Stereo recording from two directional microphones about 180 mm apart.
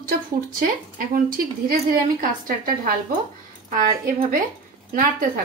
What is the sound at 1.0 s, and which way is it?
A woman's voice, 55° right (ahead or behind).